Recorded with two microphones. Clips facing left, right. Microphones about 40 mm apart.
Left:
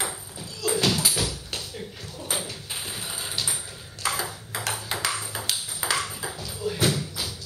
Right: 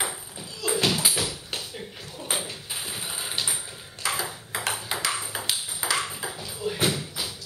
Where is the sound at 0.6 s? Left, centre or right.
Centre.